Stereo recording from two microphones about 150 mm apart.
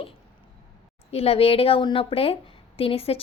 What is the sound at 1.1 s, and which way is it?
A woman's voice, 40° left (ahead or behind).